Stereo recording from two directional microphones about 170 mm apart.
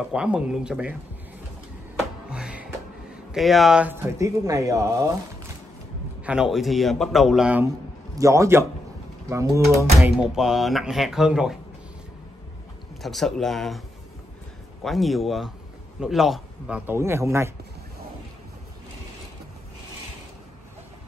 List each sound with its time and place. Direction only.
0.1 s speech: 5° right (ahead or behind)
2.2 s music: 5° right (ahead or behind)
3.3 s speech: centre (ahead or behind); by 5.1 s 20° right (ahead or behind)
6.2 s speech: 5° right (ahead or behind)
8.2 s speech: 20° right (ahead or behind)
9.9 s speech: 5° right (ahead or behind)
13.0 s speech: centre (ahead or behind); by 17.5 s 15° right (ahead or behind)